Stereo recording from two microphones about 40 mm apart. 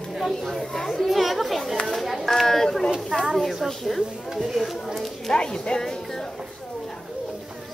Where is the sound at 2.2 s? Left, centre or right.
Centre.